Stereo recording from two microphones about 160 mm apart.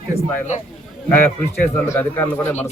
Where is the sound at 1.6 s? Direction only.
15° left (ahead or behind).